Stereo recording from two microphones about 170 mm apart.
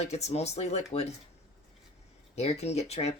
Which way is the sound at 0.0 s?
40° left (ahead or behind).